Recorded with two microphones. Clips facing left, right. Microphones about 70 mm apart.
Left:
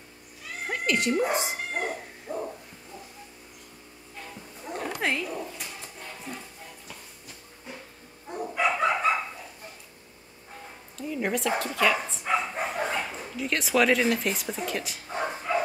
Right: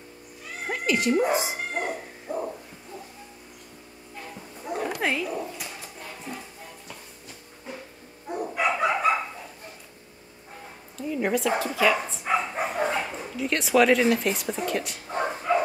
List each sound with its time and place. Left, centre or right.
0.7 s dog: centre
4.2 s dog: centre
8.3 s bow-wow: centre
11.0 s speech: centre